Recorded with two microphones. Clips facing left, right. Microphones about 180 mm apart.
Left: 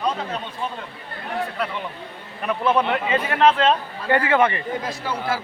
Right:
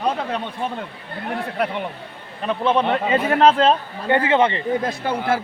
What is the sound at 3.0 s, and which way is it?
Speech, 40° right (ahead or behind).